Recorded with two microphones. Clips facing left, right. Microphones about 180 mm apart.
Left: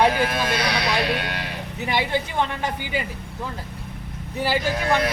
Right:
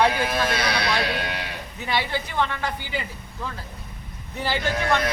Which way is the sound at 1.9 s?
15° left (ahead or behind).